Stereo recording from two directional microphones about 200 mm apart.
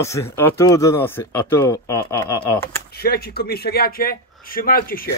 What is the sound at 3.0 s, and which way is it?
Speech, 50° left (ahead or behind).